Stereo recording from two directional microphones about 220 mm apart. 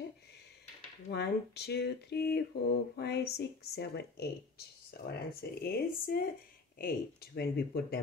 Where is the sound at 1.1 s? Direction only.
50° left (ahead or behind).